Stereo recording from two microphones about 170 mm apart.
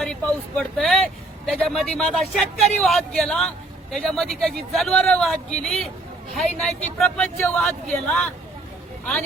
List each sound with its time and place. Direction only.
0.0 s speech: 5° left (ahead or behind)